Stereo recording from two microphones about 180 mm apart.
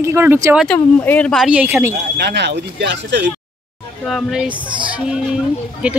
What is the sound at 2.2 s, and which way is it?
Speech, 70° right (ahead or behind).